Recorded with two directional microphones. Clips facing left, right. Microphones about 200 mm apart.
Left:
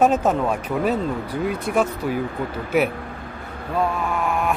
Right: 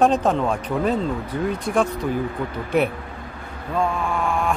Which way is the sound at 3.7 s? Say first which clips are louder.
Even; 5° left (ahead or behind).